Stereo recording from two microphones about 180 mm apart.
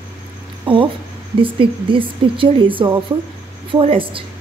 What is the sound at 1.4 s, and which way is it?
Speech, 30° right (ahead or behind).